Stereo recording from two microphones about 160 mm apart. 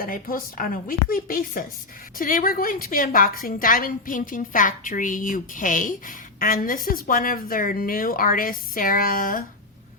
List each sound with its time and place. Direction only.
0.0 s a woman's voice: 60° left (ahead or behind)